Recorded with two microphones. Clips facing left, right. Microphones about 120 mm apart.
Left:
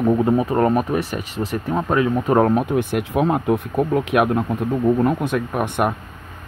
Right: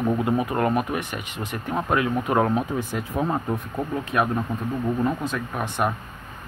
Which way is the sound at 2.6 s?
65° left (ahead or behind).